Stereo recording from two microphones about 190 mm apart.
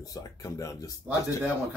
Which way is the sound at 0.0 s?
20° left (ahead or behind).